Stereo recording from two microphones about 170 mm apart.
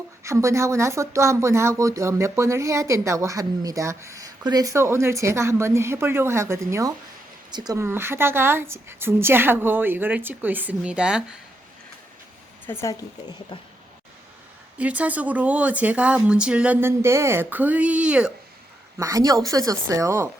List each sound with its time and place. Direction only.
0.2 s speech: 15° right (ahead or behind)
12.6 s speech: 15° left (ahead or behind)
13.5 s speech: 30° left (ahead or behind)
14.8 s speech: 10° right (ahead or behind)
18.9 s speech: 20° right (ahead or behind)